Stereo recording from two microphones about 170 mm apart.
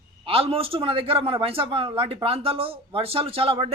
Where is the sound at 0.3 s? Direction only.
35° right (ahead or behind).